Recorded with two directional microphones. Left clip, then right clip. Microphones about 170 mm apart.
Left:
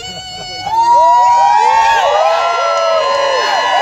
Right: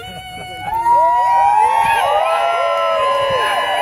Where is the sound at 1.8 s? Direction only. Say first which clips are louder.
Left 4 dB; 50° left (ahead or behind).